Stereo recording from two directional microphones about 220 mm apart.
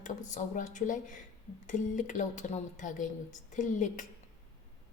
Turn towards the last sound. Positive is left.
turn(degrees=35)  # may be behind; listen again after turning